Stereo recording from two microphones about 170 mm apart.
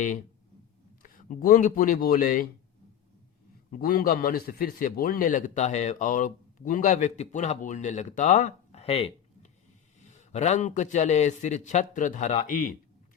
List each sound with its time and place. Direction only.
1.0 s speech: 55° left (ahead or behind)
3.7 s a man's voice: 60° left (ahead or behind)